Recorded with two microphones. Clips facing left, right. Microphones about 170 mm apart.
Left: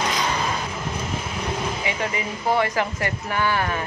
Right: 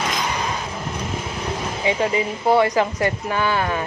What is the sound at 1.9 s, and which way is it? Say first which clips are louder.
Speech: right 6 dB; 25° right (ahead or behind).